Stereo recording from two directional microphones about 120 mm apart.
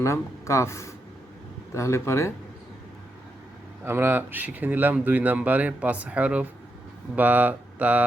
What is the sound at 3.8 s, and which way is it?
Speech, 20° right (ahead or behind).